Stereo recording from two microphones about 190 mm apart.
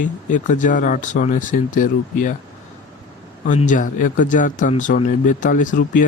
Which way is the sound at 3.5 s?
40° left (ahead or behind).